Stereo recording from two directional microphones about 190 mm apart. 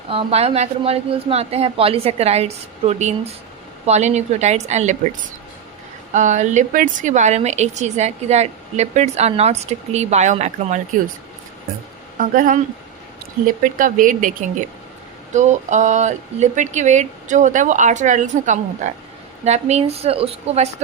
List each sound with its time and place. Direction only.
0.1 s a woman's voice: 30° right (ahead or behind)
6.1 s a woman's voice: 40° right (ahead or behind)
12.1 s speech: 45° right (ahead or behind)
13.6 s a woman's voice: 45° right (ahead or behind)